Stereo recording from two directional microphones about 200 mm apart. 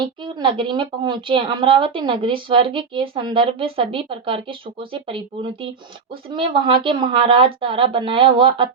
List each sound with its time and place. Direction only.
0.0 s speech: 25° right (ahead or behind)